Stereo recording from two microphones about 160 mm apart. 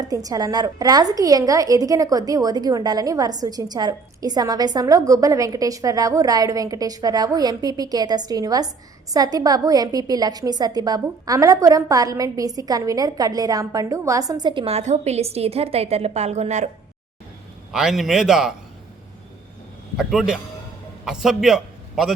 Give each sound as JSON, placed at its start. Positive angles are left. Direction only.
{"t": 0.0, "sound": "a woman's voice", "side_deg": -25}
{"t": 17.7, "sound": "a man's voice", "side_deg": -5}
{"t": 20.0, "sound": "a man's voice", "side_deg": -5}